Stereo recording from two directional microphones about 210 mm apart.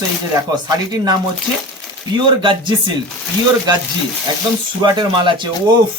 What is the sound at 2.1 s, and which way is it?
Speech, 25° right (ahead or behind).